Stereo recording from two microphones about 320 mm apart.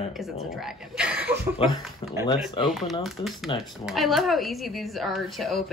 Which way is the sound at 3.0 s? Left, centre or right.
Centre.